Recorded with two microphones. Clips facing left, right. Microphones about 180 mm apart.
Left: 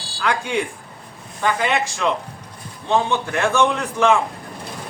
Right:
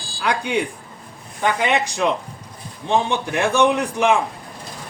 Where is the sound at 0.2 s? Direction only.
20° right (ahead or behind).